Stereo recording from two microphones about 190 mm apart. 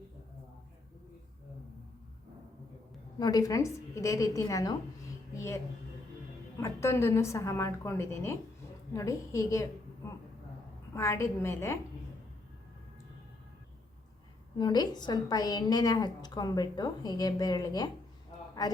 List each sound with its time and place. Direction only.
3.2 s a woman's voice: 20° left (ahead or behind)
6.6 s a woman's voice: 15° left (ahead or behind)
14.6 s a woman's voice: 20° left (ahead or behind)